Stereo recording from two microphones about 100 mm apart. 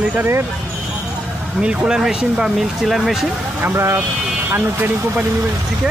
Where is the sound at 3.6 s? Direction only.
25° right (ahead or behind).